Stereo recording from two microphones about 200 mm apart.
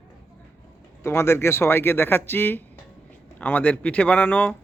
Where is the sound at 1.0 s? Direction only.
15° left (ahead or behind).